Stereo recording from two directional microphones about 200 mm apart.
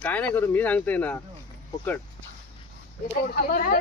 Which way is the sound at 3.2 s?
50° left (ahead or behind).